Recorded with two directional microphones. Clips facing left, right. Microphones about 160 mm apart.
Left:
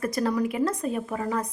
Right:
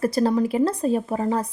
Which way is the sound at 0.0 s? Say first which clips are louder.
Right 5 dB; 30° right (ahead or behind).